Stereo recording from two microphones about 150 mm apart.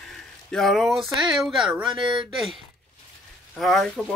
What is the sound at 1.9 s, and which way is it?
Speech, 35° right (ahead or behind).